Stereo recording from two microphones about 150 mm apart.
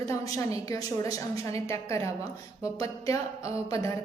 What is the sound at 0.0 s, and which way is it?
A woman's voice, 20° left (ahead or behind).